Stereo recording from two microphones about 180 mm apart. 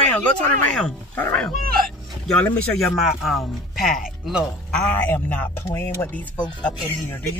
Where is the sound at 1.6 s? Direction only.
55° right (ahead or behind).